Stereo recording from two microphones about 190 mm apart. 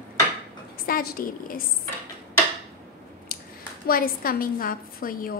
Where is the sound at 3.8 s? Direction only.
50° left (ahead or behind).